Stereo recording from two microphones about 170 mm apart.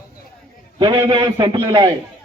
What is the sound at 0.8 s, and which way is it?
A man's voice, 30° right (ahead or behind).